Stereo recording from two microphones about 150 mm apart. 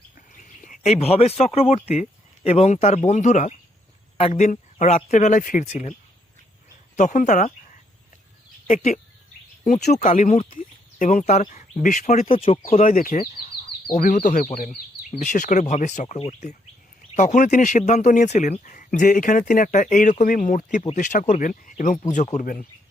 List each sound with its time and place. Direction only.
0.4 s bird: 60° left (ahead or behind)
0.9 s speech: 40° left (ahead or behind)
6.9 s speech: 55° left (ahead or behind)
8.6 s speech: 50° left (ahead or behind)
12.3 s speech: 40° left (ahead or behind)
12.8 s speech: 60° left (ahead or behind)
13.3 s a sound: 35° left (ahead or behind)
13.9 s speech: 55° left (ahead or behind)